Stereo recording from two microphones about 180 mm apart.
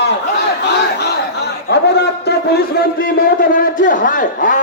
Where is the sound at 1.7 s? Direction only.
65° left (ahead or behind).